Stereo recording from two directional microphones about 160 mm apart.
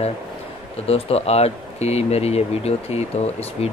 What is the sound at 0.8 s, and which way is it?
Speech, 40° left (ahead or behind).